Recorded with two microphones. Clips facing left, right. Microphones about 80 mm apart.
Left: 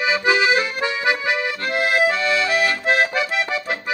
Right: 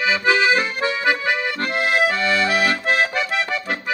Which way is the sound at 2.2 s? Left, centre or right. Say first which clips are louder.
Even; right.